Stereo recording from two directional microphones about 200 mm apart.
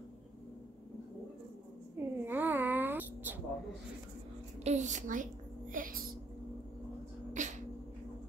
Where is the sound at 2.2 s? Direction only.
10° right (ahead or behind).